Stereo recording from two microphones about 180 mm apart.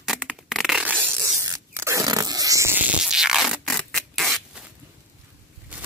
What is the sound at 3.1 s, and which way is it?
Scratch, centre (ahead or behind).